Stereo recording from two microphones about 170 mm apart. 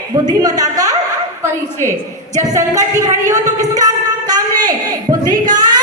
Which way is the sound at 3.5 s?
20° right (ahead or behind).